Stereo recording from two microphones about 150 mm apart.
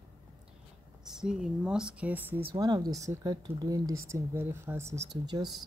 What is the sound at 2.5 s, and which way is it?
Speech, 25° right (ahead or behind).